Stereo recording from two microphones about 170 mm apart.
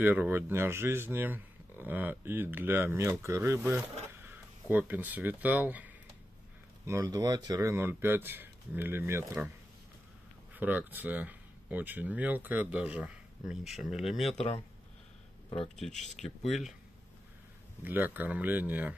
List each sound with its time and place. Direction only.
0.0 s speech: 10° right (ahead or behind)
6.9 s speech: 20° right (ahead or behind)
10.5 s speech: 10° right (ahead or behind)
15.8 s speech: centre (ahead or behind)
17.8 s speech: 10° right (ahead or behind)